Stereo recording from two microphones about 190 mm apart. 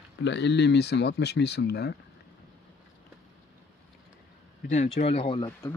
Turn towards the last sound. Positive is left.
turn(degrees=15)  # may be behind; listen again after turning